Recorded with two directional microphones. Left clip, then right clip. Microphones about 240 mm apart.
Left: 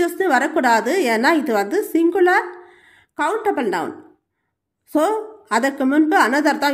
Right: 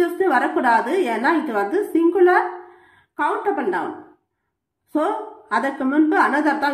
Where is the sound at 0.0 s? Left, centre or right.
Left.